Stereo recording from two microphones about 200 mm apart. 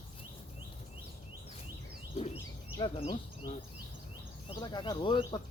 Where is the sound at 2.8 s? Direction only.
25° left (ahead or behind).